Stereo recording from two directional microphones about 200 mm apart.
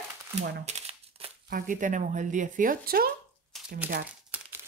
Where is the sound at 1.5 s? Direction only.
45° right (ahead or behind).